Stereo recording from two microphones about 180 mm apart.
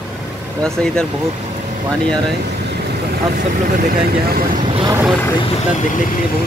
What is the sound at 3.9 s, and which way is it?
Speech, 55° right (ahead or behind).